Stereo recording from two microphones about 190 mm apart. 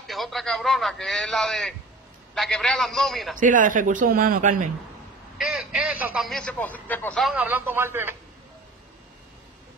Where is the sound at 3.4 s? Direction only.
45° right (ahead or behind).